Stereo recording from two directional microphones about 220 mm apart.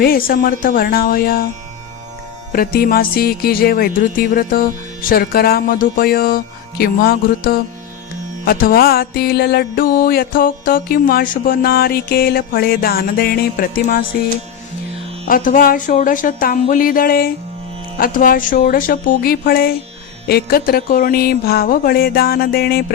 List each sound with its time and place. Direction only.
0.0 s speech: 40° left (ahead or behind)
2.5 s music: 40° left (ahead or behind)
15.3 s speech: 35° left (ahead or behind)
20.2 s music: 45° left (ahead or behind)